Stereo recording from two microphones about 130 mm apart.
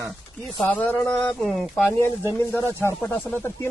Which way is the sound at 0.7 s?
10° left (ahead or behind).